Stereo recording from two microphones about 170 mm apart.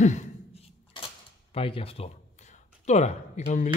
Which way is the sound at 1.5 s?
35° left (ahead or behind).